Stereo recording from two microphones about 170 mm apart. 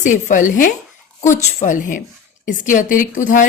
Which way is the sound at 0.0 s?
50° left (ahead or behind).